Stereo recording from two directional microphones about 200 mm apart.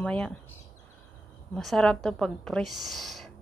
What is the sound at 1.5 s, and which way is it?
Speech, centre (ahead or behind).